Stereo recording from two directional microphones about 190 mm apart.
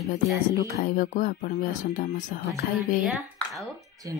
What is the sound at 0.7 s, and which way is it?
Speech, 45° left (ahead or behind).